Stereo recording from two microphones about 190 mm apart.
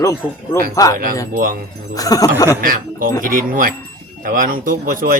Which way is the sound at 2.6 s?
45° right (ahead or behind).